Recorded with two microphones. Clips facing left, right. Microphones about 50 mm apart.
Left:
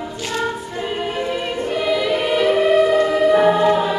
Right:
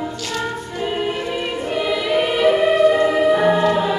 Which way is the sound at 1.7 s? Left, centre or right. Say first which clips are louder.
Even; centre.